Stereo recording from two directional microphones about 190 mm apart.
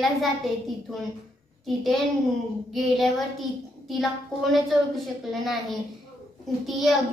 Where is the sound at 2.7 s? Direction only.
Centre (ahead or behind).